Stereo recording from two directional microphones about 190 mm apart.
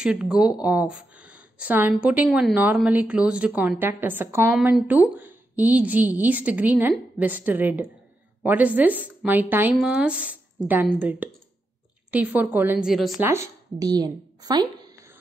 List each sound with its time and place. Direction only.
0.0 s speech: 5° right (ahead or behind)
13.3 s speech: 15° right (ahead or behind)